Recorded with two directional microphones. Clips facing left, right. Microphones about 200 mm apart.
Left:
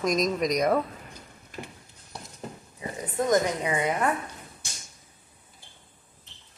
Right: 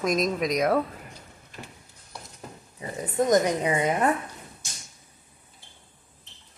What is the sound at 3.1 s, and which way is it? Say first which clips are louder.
Speech: right 2 dB; 20° right (ahead or behind).